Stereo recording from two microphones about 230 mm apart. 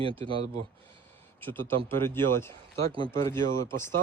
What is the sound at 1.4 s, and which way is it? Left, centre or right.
Speech, centre.